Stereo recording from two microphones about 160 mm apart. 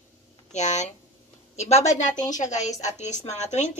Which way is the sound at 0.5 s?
45° left (ahead or behind).